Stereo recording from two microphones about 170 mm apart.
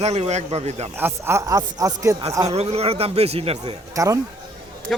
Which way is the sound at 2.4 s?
40° right (ahead or behind).